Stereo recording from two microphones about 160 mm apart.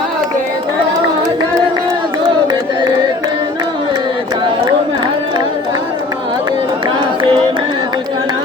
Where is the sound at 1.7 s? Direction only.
25° right (ahead or behind).